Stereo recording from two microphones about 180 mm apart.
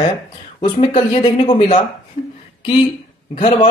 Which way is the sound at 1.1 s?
30° left (ahead or behind).